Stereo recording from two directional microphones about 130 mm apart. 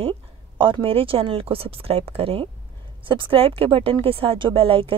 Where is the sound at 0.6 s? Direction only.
40° right (ahead or behind).